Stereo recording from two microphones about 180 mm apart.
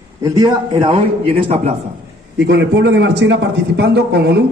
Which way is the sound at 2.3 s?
75° right (ahead or behind).